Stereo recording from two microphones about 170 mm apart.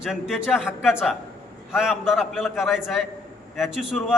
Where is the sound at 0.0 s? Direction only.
5° right (ahead or behind).